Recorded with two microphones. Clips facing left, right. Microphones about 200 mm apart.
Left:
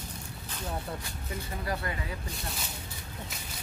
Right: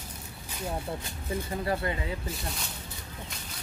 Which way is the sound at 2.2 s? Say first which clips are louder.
Right 3 dB; centre (ahead or behind).